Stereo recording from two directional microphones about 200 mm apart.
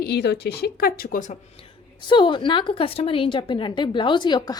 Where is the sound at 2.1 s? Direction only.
25° left (ahead or behind).